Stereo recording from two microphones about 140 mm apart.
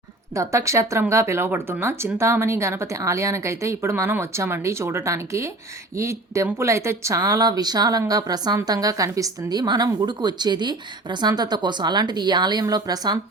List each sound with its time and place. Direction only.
0.3 s speech: 20° right (ahead or behind)